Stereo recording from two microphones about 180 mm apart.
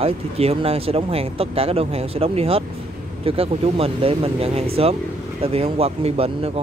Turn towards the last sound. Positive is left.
turn(degrees=-35)  # may be behind; listen again after turning